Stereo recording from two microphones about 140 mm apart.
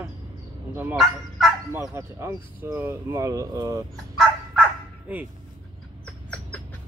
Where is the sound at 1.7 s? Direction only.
20° right (ahead or behind).